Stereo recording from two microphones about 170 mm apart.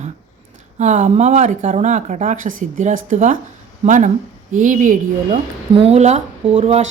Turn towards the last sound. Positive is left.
turn(degrees=-40)  # may be behind; listen again after turning